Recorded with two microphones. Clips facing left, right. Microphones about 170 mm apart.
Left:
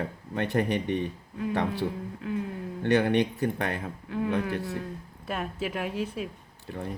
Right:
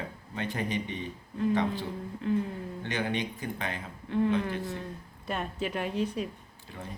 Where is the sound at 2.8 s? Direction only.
60° left (ahead or behind).